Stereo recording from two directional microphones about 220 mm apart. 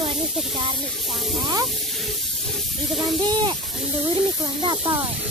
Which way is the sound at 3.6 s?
Centre (ahead or behind).